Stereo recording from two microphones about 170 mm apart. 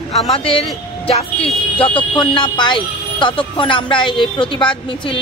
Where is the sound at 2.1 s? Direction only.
25° left (ahead or behind).